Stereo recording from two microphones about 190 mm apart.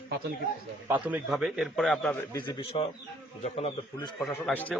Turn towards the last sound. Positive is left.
turn(degrees=5)  # may be behind; listen again after turning